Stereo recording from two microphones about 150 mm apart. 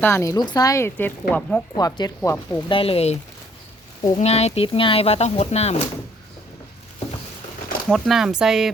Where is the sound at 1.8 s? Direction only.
25° left (ahead or behind).